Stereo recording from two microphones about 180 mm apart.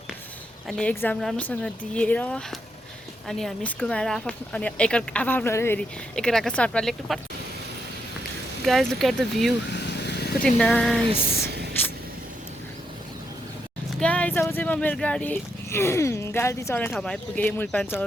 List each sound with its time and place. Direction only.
0.7 s speech: 5° left (ahead or behind)
8.6 s speech: centre (ahead or behind)
9.7 s vehicle: 65° left (ahead or behind)
10.4 s speech: 5° left (ahead or behind)
11.3 s a sound: 65° right (ahead or behind)
14.0 s speech: 5° left (ahead or behind)